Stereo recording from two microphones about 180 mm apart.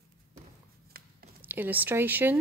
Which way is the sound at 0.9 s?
55° right (ahead or behind).